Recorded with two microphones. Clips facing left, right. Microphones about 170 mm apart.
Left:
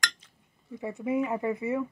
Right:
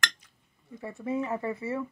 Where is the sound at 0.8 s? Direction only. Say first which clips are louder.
Left 3 dB; 15° left (ahead or behind).